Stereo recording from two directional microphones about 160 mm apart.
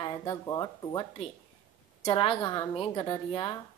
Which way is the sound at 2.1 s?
30° left (ahead or behind).